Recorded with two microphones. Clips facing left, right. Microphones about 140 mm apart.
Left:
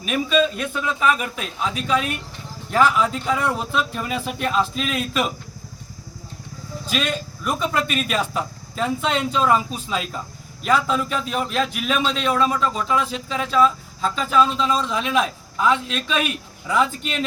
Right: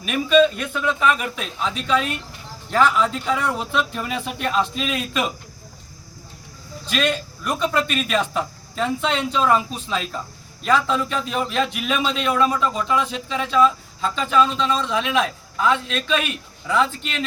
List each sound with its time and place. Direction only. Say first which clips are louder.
0.0 s a man's voice: right 3 dB; centre (ahead or behind)
6.8 s a man's voice: right 2 dB; 5° left (ahead or behind)